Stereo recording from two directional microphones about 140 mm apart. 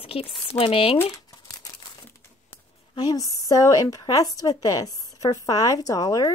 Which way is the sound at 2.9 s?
25° left (ahead or behind).